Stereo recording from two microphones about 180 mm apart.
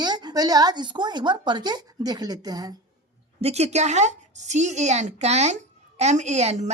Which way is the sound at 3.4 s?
35° right (ahead or behind).